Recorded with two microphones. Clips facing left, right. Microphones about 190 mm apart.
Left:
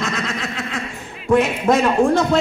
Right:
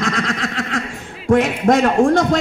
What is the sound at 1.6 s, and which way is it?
Speech, 50° right (ahead or behind).